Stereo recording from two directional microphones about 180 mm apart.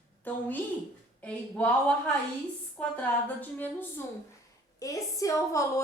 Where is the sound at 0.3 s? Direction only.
10° left (ahead or behind).